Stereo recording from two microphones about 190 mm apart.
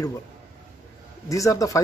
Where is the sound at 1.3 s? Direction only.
15° left (ahead or behind).